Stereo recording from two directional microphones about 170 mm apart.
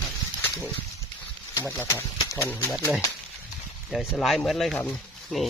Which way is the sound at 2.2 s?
25° left (ahead or behind).